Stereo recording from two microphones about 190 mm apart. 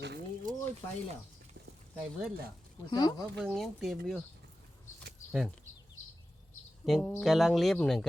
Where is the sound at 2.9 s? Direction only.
20° left (ahead or behind).